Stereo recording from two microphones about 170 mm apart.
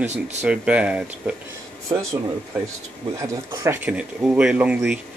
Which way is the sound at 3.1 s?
20° right (ahead or behind).